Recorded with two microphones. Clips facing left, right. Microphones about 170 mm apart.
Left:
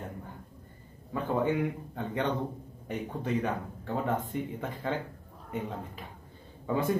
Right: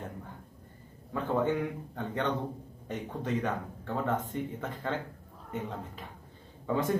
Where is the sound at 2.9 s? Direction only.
10° left (ahead or behind).